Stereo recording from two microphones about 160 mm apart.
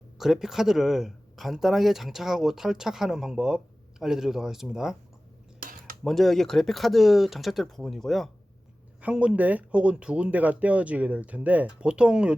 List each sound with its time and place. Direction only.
0.2 s speech: centre (ahead or behind)
5.5 s cutlery: 60° right (ahead or behind)
6.1 s speech: centre (ahead or behind)